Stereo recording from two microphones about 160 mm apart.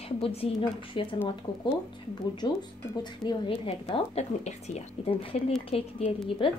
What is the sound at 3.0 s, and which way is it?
A woman's voice, 25° left (ahead or behind).